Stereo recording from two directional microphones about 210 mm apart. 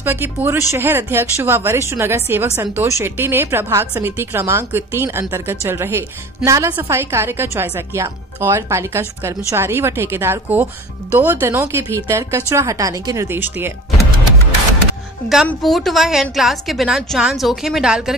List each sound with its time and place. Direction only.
0.0 s speech: 10° right (ahead or behind)
15.2 s a woman's voice: centre (ahead or behind)